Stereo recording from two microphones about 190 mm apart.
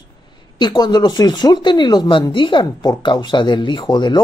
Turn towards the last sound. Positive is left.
turn(degrees=25)  # may be behind; listen again after turning